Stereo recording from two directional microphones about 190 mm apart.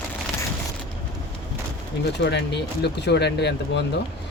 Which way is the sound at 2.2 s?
65° left (ahead or behind).